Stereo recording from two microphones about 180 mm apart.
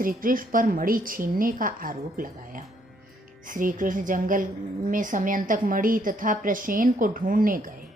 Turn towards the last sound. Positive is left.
turn(degrees=-50)  # may be behind; listen again after turning